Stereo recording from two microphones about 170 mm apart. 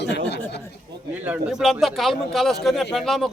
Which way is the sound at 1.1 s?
10° right (ahead or behind).